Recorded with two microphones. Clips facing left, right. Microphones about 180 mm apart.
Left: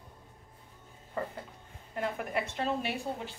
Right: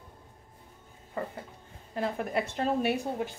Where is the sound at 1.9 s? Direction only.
35° right (ahead or behind).